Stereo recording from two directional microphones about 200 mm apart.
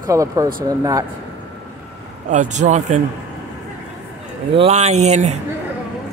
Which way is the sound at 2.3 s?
35° right (ahead or behind).